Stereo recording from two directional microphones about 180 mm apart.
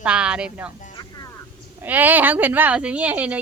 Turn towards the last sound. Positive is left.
turn(degrees=-10)  # may be behind; listen again after turning